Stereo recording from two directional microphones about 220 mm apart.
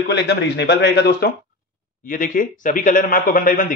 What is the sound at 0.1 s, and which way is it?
Speech, 50° left (ahead or behind).